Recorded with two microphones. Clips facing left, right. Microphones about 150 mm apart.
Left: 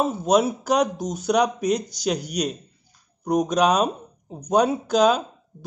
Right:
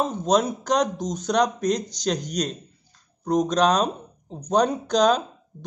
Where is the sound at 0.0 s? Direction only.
5° left (ahead or behind).